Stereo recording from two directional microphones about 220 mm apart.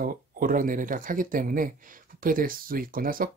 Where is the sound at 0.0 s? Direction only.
40° right (ahead or behind).